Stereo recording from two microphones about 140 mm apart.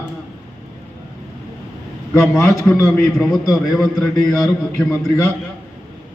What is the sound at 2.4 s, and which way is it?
Speech, 20° left (ahead or behind).